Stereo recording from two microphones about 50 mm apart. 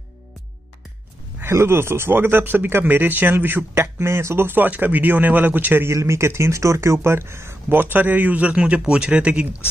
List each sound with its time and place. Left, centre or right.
1.4 s speech: right
5.9 s speech: right
7.7 s a man's voice: right